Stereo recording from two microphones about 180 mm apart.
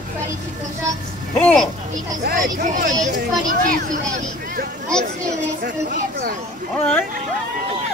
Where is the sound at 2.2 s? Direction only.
50° right (ahead or behind).